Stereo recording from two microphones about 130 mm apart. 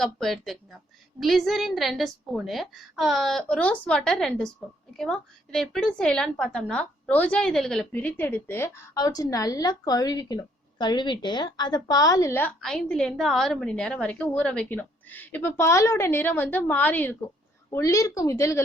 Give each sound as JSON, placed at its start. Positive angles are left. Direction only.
{"t": 0.0, "sound": "a woman's voice", "side_deg": 0}
{"t": 12.4, "sound": "a woman's voice", "side_deg": 10}